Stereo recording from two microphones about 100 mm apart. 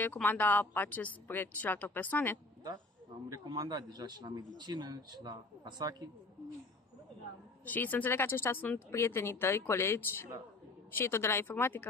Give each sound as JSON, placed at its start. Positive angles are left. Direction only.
{"t": 0.0, "sound": "a woman's voice", "side_deg": 20}
{"t": 3.4, "sound": "a man's voice", "side_deg": -45}
{"t": 7.6, "sound": "a woman's voice", "side_deg": 15}